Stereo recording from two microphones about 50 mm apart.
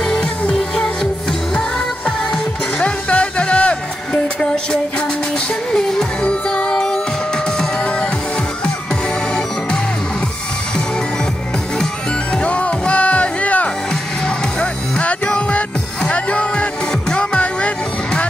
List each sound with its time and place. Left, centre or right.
0.0 s music: centre
2.0 s music: left
5.7 s music: centre
12.4 s music: left